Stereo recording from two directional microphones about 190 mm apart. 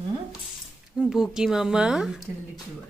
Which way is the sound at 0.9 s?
5° right (ahead or behind).